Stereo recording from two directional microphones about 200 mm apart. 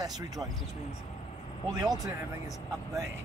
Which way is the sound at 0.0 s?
20° right (ahead or behind).